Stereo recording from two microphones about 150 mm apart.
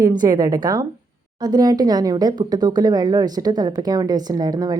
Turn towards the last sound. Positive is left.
turn(degrees=-25)  # may be behind; listen again after turning